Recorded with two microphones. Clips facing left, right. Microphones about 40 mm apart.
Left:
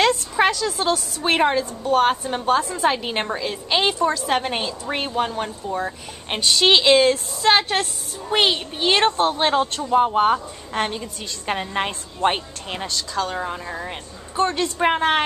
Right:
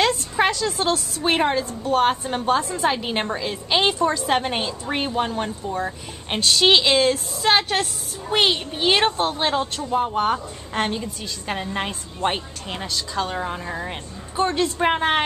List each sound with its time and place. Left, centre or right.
0.0 s a woman's voice: centre
10.3 s a woman's voice: centre
11.4 s a woman's voice: centre
13.3 s a woman's voice: centre